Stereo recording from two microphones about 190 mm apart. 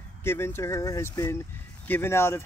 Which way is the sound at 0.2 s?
10° left (ahead or behind).